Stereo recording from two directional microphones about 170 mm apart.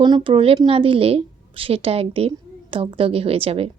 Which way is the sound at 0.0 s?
30° right (ahead or behind).